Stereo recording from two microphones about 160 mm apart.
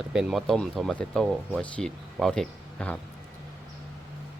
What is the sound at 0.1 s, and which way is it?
Speech, centre (ahead or behind).